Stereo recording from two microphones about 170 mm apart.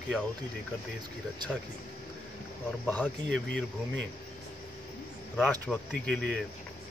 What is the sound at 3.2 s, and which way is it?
Speech, 90° right.